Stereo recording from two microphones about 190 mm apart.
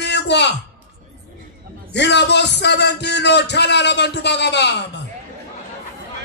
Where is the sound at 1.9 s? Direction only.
65° left (ahead or behind).